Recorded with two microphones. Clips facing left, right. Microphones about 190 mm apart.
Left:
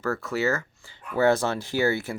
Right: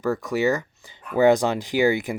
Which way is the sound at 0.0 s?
15° right (ahead or behind).